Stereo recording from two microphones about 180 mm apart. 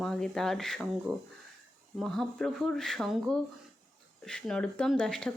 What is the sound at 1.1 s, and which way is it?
Speech, 20° right (ahead or behind).